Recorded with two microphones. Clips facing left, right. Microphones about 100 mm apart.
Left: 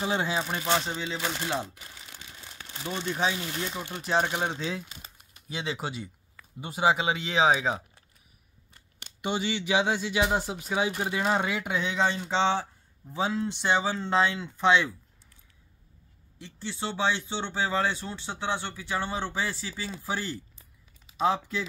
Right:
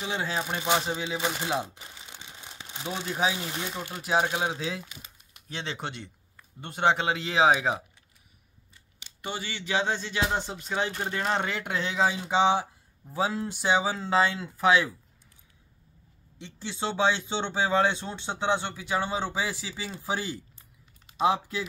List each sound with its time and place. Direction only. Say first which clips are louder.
0.7 s speech: right 2 dB; 10° right (ahead or behind)
1.1 s crumpling: right 2 dB; 15° right (ahead or behind)
3.0 s speech: even; 5° right (ahead or behind)
9.2 s speech: left 6 dB; 20° left (ahead or behind); by 14.9 s 5° right (ahead or behind)
16.3 s speech: right 1 dB; 20° right (ahead or behind)